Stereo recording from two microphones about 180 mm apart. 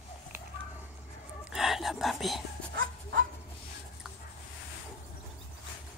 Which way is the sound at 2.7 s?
90° right.